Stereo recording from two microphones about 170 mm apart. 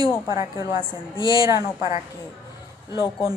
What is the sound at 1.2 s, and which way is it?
Speech, 30° left (ahead or behind).